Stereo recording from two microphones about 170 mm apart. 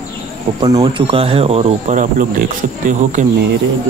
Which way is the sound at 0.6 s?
25° right (ahead or behind).